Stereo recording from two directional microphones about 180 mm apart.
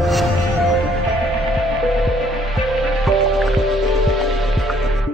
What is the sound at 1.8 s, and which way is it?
Music, centre (ahead or behind).